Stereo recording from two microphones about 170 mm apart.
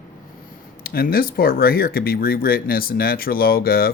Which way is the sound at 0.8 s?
60° left (ahead or behind).